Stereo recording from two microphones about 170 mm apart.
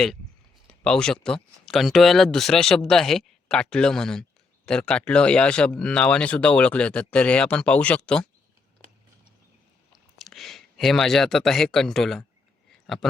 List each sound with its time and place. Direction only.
0.7 s speech: 5° left (ahead or behind)
9.9 s speech: centre (ahead or behind)